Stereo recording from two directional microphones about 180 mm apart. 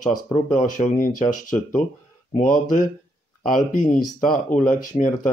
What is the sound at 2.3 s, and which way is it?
Speech, 45° left (ahead or behind).